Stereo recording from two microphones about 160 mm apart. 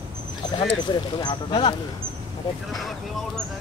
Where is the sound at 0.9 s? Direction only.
25° left (ahead or behind).